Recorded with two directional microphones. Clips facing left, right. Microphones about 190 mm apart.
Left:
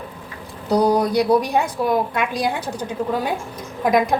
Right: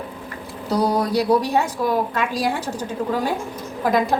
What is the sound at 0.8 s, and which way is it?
A woman's voice, 10° left (ahead or behind).